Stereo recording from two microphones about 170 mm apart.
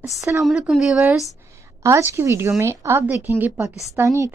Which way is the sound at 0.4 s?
Centre (ahead or behind).